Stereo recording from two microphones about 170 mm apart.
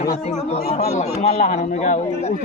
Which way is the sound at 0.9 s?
40° left (ahead or behind).